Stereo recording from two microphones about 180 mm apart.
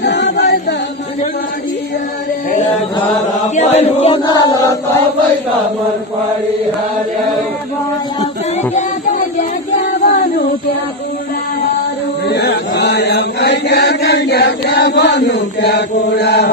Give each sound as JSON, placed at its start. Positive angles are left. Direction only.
{"t": 0.0, "sound": "a capella", "side_deg": 70}
{"t": 3.5, "sound": "chant", "side_deg": 40}
{"t": 8.7, "sound": "a sound", "side_deg": 45}
{"t": 12.3, "sound": "chant", "side_deg": 70}
{"t": 15.6, "sound": "mantra", "side_deg": 65}